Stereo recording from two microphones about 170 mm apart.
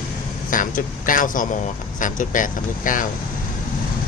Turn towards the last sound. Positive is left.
turn(degrees=50)  # may be behind; listen again after turning